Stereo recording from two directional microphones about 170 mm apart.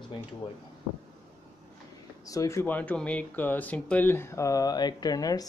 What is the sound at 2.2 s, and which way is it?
Speech, 20° left (ahead or behind).